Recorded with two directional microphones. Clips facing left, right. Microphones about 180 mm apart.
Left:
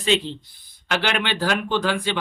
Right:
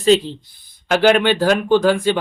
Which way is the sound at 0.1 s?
40° right (ahead or behind).